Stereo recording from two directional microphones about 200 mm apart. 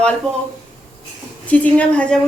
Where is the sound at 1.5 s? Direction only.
5° left (ahead or behind).